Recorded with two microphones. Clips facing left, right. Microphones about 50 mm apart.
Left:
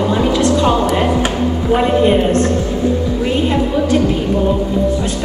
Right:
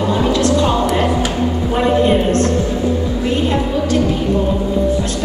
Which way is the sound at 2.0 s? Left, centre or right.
Centre.